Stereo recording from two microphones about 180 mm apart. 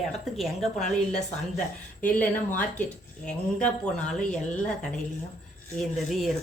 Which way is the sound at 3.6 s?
5° left (ahead or behind).